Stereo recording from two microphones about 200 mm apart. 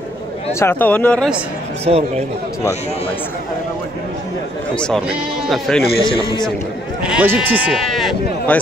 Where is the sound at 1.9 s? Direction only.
30° right (ahead or behind).